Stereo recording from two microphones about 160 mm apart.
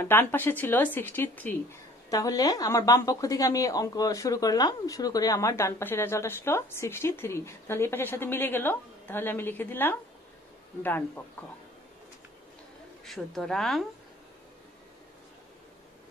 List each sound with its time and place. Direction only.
0.0 s speech: 15° left (ahead or behind)
13.0 s a woman's voice: centre (ahead or behind)